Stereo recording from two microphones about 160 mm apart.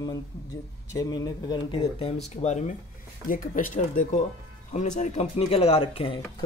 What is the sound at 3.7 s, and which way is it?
Speech, 55° left (ahead or behind).